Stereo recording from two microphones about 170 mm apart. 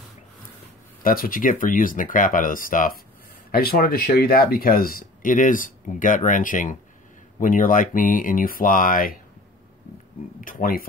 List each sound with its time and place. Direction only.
1.0 s speech: 55° left (ahead or behind)
10.4 s speech: 55° left (ahead or behind)